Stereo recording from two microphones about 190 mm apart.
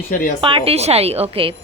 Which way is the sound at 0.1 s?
45° left (ahead or behind).